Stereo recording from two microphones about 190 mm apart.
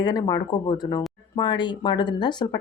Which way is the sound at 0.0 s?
20° left (ahead or behind).